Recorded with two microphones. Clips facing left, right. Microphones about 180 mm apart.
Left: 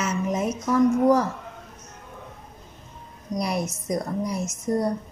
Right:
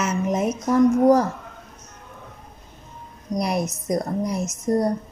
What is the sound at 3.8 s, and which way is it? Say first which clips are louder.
A woman's voice: right 3 dB; 45° right (ahead or behind).